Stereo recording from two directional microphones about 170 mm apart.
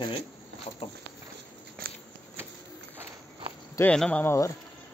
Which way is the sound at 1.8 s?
60° right (ahead or behind).